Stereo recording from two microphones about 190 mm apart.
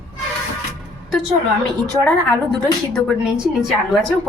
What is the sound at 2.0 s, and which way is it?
A woman's voice, 10° left (ahead or behind).